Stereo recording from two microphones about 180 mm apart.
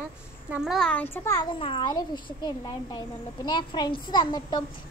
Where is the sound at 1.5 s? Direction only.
30° left (ahead or behind).